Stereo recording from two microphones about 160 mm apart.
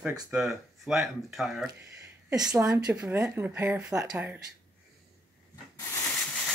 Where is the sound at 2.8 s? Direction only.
5° right (ahead or behind).